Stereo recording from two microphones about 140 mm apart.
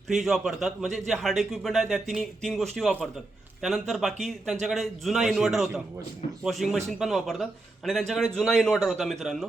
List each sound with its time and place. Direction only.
0.1 s a man's voice: centre (ahead or behind)